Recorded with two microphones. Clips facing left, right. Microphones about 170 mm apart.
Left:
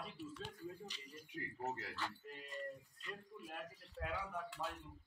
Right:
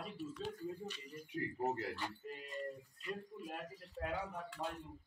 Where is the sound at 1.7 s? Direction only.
25° right (ahead or behind).